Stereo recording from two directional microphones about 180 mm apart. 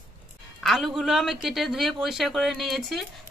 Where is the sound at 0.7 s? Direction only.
Centre (ahead or behind).